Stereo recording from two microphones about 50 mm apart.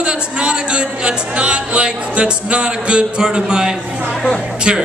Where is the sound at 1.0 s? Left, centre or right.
Centre.